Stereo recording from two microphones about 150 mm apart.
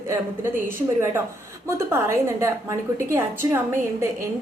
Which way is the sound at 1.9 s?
15° right (ahead or behind).